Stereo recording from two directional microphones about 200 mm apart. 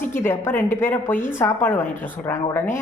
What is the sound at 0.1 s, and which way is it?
A woman's voice, 10° left (ahead or behind).